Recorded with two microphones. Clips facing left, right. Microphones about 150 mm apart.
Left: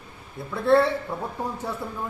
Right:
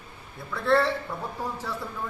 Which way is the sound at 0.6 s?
25° left (ahead or behind).